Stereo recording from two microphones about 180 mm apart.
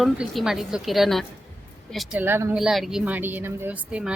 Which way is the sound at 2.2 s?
15° right (ahead or behind).